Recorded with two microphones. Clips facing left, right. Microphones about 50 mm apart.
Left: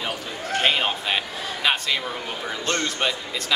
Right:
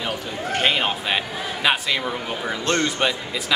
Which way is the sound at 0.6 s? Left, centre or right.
Centre.